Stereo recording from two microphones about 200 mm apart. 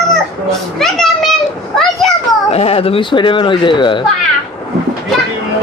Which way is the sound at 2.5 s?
30° left (ahead or behind).